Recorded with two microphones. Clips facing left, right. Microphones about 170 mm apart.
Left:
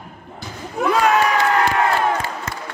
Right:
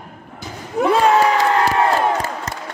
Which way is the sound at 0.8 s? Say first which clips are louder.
Right 3 dB; 30° right (ahead or behind).